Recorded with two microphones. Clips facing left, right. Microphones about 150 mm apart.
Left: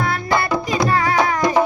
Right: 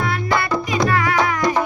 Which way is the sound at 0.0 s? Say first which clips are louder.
Left 1 dB; 35° left (ahead or behind).